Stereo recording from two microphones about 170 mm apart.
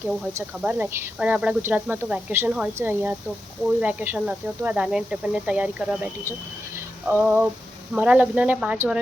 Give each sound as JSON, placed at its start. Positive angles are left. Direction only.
{"t": 0.0, "sound": "speech", "side_deg": -10}
{"t": 6.7, "sound": "a sound", "side_deg": -10}
{"t": 7.9, "sound": "speech", "side_deg": -10}